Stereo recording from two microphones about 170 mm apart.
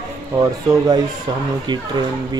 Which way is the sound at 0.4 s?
25° right (ahead or behind).